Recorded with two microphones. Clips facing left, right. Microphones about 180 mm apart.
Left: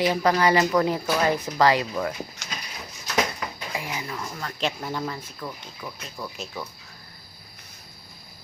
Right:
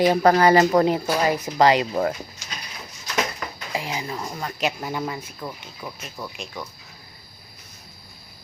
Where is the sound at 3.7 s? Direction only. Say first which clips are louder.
Right 6 dB; 25° right (ahead or behind).